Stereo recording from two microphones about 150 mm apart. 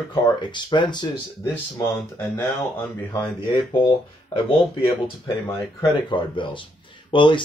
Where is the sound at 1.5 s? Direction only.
15° left (ahead or behind).